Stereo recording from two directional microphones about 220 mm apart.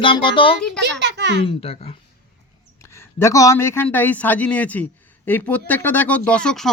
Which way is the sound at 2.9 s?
10° left (ahead or behind).